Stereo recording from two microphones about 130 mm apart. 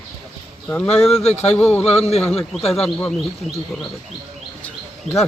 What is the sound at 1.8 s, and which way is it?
Speech, 55° left (ahead or behind).